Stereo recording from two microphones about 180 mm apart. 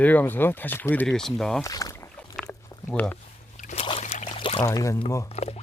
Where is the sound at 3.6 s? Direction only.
40° left (ahead or behind).